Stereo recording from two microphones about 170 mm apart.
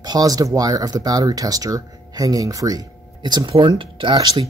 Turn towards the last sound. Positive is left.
turn(degrees=-30)  # may be behind; listen again after turning